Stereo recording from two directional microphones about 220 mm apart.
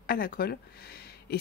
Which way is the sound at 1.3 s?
45° left (ahead or behind).